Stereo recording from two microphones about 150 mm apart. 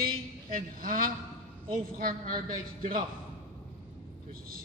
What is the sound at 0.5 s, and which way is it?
A man's voice, 65° right (ahead or behind).